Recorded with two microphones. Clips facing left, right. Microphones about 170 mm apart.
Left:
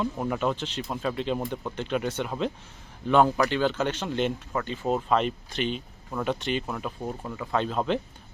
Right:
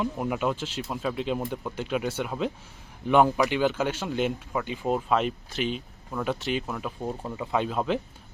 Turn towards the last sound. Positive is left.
turn(degrees=-5)  # may be behind; listen again after turning